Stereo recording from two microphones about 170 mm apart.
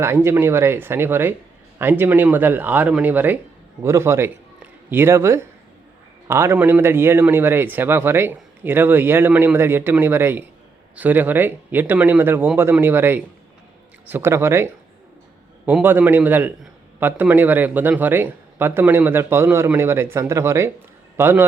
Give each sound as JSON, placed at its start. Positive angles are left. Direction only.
{"t": 0.0, "sound": "a man's voice", "side_deg": -15}